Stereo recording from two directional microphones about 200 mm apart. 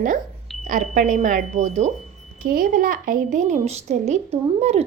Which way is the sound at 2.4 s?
50° right (ahead or behind).